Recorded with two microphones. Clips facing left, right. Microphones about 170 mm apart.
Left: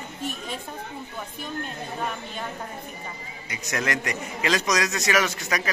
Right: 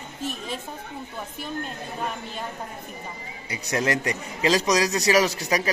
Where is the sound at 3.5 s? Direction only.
30° right (ahead or behind).